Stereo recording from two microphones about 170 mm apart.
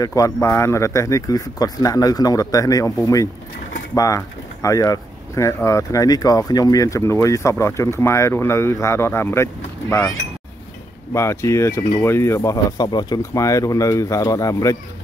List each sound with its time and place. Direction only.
0.0 s speech: 20° left (ahead or behind)
11.1 s speech: 15° left (ahead or behind)